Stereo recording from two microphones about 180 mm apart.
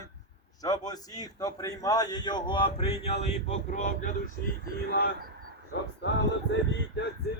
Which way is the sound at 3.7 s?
45° left (ahead or behind).